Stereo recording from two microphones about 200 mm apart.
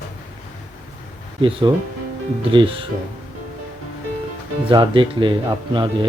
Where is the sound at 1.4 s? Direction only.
25° right (ahead or behind).